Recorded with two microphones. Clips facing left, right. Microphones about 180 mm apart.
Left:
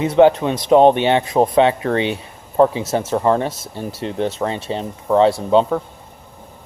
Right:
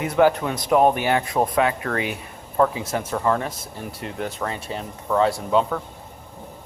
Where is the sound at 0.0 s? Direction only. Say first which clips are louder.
Left 6 dB; 25° left (ahead or behind).